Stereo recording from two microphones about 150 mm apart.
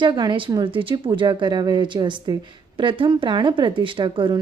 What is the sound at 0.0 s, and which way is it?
A woman's voice, 30° right (ahead or behind).